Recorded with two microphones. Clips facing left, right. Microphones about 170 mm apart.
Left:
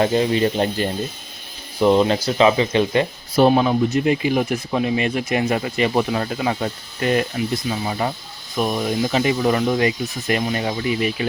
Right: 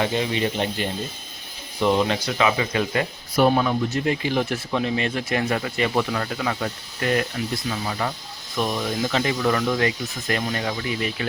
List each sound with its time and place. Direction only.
0.0 s speech: 40° left (ahead or behind); by 11.3 s 20° left (ahead or behind)